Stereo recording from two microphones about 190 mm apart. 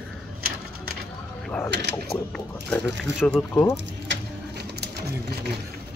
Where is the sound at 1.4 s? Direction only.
5° left (ahead or behind).